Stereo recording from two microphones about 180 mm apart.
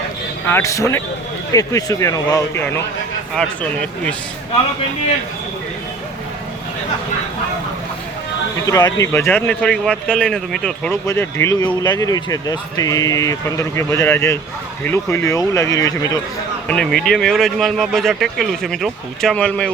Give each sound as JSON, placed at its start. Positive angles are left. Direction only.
{"t": 0.4, "sound": "speech", "side_deg": 15}
{"t": 8.6, "sound": "speech", "side_deg": 20}
{"t": 11.0, "sound": "speech", "side_deg": 15}
{"t": 16.6, "sound": "speech", "side_deg": 5}